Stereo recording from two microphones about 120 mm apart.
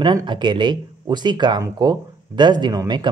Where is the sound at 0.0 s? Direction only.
40° right (ahead or behind).